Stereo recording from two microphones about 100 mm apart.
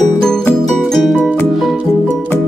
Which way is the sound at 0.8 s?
5° left (ahead or behind).